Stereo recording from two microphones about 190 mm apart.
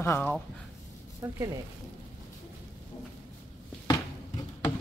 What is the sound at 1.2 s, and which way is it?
Speech, 15° right (ahead or behind).